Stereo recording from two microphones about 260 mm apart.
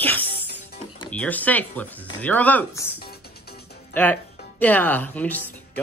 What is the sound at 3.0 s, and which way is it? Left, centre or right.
Music, left.